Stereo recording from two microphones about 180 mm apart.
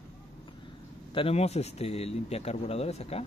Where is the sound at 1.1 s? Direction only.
30° left (ahead or behind).